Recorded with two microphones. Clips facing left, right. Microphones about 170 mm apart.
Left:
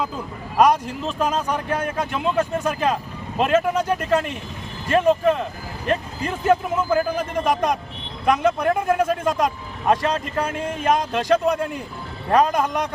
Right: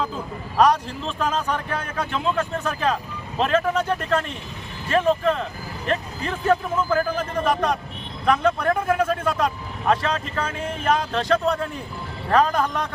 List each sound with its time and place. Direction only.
0.5 s speech: 15° left (ahead or behind)